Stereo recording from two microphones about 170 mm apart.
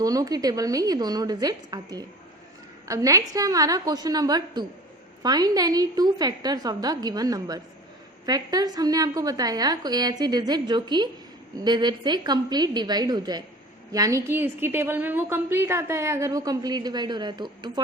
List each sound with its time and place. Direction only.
0.0 s a woman's voice: 20° right (ahead or behind)